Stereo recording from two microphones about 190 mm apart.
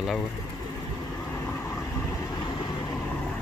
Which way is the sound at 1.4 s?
10° left (ahead or behind).